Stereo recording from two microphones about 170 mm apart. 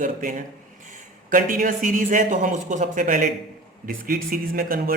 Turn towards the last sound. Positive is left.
turn(degrees=-60)  # may be behind; listen again after turning